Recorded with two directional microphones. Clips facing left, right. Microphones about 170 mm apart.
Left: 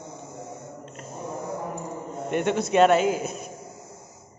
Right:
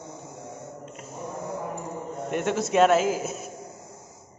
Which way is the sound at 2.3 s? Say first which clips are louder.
Left 2 dB; centre (ahead or behind).